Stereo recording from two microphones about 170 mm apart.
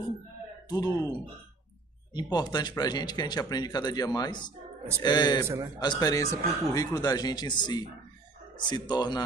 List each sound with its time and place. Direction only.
0.7 s speech: 20° left (ahead or behind)
2.1 s speech: 25° left (ahead or behind)